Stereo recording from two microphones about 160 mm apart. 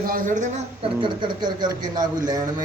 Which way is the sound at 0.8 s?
30° right (ahead or behind).